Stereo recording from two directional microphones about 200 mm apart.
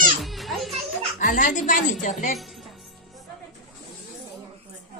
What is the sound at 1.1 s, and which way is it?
A woman's voice, 40° left (ahead or behind).